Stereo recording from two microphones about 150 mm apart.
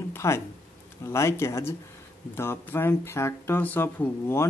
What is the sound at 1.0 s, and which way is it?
Speech, 20° left (ahead or behind).